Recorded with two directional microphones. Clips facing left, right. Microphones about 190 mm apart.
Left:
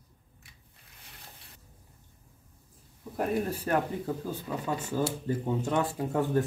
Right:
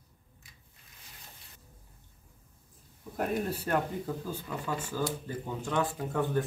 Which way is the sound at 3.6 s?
15° left (ahead or behind).